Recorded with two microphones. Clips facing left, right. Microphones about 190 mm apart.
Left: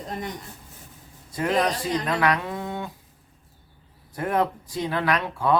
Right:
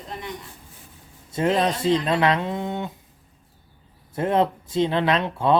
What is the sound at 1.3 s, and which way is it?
Speech, 25° right (ahead or behind).